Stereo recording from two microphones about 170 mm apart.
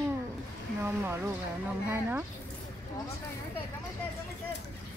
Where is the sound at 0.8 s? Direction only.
10° right (ahead or behind).